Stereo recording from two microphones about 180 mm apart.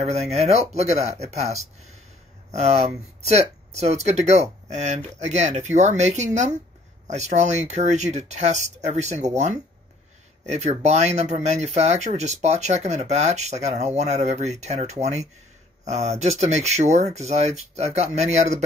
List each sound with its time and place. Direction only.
0.0 s speech: 40° right (ahead or behind)